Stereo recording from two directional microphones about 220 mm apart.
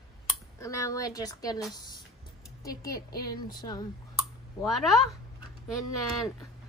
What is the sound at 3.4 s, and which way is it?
Speech, 20° left (ahead or behind).